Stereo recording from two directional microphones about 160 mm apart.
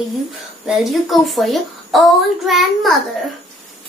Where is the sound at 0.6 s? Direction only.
Centre (ahead or behind).